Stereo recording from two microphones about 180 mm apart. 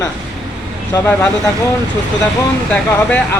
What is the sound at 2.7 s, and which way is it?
Speech, 10° left (ahead or behind).